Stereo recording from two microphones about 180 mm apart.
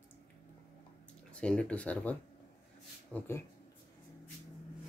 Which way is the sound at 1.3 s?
5° left (ahead or behind).